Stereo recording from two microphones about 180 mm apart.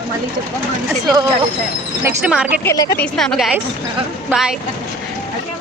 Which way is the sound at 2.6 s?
15° left (ahead or behind).